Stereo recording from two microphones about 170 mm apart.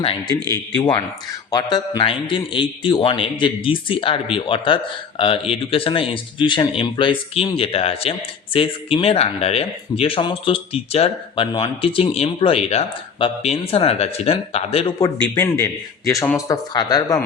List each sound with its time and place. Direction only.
0.0 s a man's voice: 30° left (ahead or behind)
14.9 s a man's voice: 20° left (ahead or behind)